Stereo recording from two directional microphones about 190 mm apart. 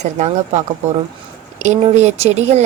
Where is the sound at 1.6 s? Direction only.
35° right (ahead or behind).